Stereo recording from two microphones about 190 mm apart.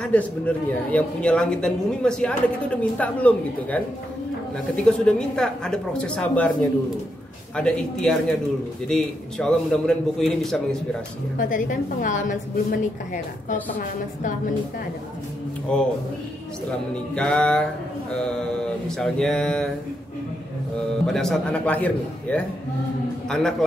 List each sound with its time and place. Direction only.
0.0 s a woman's voice: 5° left (ahead or behind)
4.8 s a woman's voice: 5° left (ahead or behind)
7.5 s a woman's voice: 5° left (ahead or behind)
11.3 s a woman's voice: 45° left (ahead or behind)
15.7 s a woman's voice: 5° left (ahead or behind)
16.9 s a woman's voice: 5° left (ahead or behind)
21.1 s a woman's voice: 5° left (ahead or behind)